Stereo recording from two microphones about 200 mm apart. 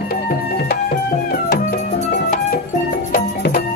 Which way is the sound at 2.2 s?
40° left (ahead or behind).